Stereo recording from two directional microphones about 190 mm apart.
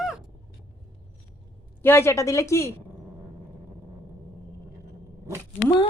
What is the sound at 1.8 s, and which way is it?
Speech, 10° left (ahead or behind).